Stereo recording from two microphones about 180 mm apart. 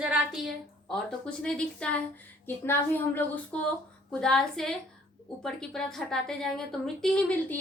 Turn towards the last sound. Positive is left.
turn(degrees=5)  # may be behind; listen again after turning